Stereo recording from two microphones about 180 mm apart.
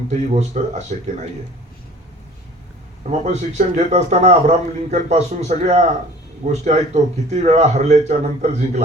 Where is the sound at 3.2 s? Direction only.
40° right (ahead or behind).